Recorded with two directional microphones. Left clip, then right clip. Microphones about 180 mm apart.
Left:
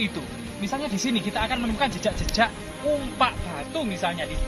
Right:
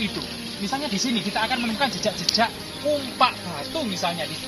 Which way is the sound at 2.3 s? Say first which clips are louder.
Right 2 dB; 5° left (ahead or behind).